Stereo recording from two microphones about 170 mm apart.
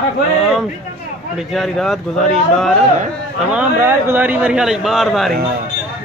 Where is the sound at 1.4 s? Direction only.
Centre (ahead or behind).